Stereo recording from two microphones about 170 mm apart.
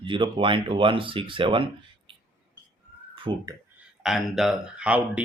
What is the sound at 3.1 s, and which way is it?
Speech, 30° right (ahead or behind).